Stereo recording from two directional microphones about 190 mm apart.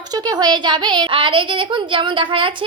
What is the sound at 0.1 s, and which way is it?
A woman's voice, 20° right (ahead or behind).